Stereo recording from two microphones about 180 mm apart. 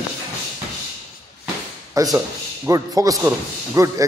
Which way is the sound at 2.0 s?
20° right (ahead or behind).